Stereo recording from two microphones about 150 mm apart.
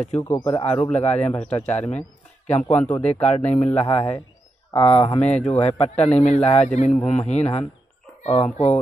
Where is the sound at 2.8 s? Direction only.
10° left (ahead or behind).